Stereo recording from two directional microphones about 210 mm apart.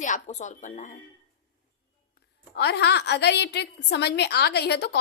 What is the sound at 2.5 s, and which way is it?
A woman's voice, 50° left (ahead or behind).